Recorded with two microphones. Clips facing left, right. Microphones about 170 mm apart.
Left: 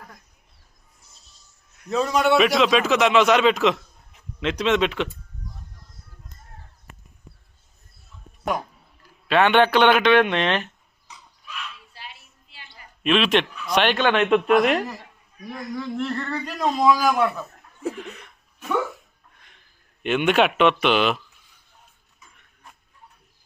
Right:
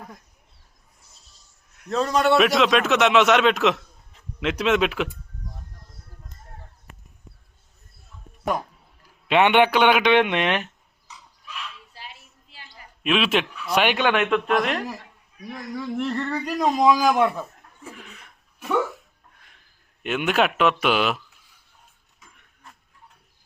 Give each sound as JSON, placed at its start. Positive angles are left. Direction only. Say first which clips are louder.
{"t": 1.7, "sound": "a man's voice", "louder": "even", "side_deg": 5}
{"t": 9.2, "sound": "a man's voice", "louder": "even", "side_deg": -20}
{"t": 11.9, "sound": "a sound", "louder": "even", "side_deg": -40}
{"t": 13.0, "sound": "a man's voice", "louder": "left 2 dB", "side_deg": -5}
{"t": 14.3, "sound": "a man's voice", "louder": "left 4 dB", "side_deg": 5}
{"t": 15.8, "sound": "a man's voice", "louder": "right 2 dB", "side_deg": -15}
{"t": 20.0, "sound": "a man's voice", "louder": "left 3 dB", "side_deg": -5}